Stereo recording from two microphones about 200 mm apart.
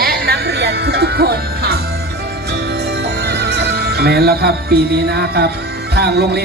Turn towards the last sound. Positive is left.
turn(degrees=-55)  # may be behind; listen again after turning